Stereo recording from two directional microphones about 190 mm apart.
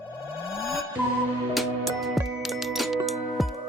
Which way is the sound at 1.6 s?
Centre (ahead or behind).